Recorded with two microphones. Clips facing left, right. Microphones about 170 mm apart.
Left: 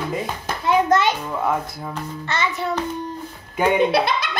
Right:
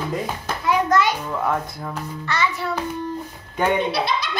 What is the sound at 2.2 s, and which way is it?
Speech, 25° left (ahead or behind).